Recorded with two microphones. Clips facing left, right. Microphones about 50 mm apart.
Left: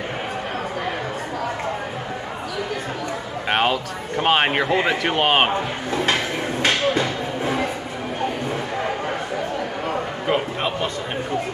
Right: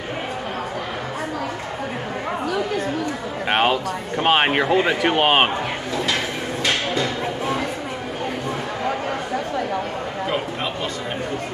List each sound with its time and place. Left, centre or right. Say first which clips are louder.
3.4 s speech: right 1 dB; centre
6.6 s music: left 2 dB; left
10.2 s a sound: left 3 dB; centre